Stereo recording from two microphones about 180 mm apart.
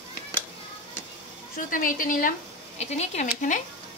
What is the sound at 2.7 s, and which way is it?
Speech, 35° left (ahead or behind).